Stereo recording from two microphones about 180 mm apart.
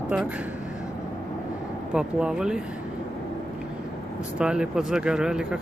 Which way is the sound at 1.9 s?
5° right (ahead or behind).